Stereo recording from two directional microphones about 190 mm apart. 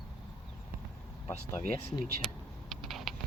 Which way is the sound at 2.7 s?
Centre (ahead or behind).